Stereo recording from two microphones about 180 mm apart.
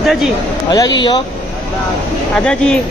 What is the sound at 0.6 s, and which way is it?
Speech, 25° left (ahead or behind).